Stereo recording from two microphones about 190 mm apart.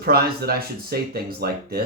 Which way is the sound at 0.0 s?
55° right (ahead or behind).